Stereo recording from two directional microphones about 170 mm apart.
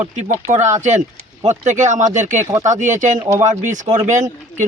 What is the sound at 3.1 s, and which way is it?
Speech, 20° right (ahead or behind).